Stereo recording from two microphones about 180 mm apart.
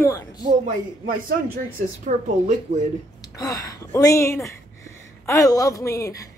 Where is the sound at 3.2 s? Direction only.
20° left (ahead or behind).